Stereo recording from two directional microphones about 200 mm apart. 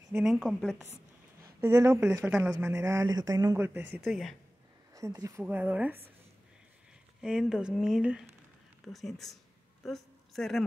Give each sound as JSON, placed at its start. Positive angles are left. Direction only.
{"t": 0.1, "sound": "speech", "side_deg": 0}
{"t": 1.6, "sound": "speech", "side_deg": -15}
{"t": 4.0, "sound": "speech", "side_deg": 0}
{"t": 4.9, "sound": "speech", "side_deg": -15}
{"t": 7.2, "sound": "speech", "side_deg": -5}
{"t": 9.8, "sound": "a sound", "side_deg": 0}